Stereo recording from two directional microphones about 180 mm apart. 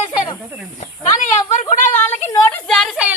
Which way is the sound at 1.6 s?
45° left (ahead or behind).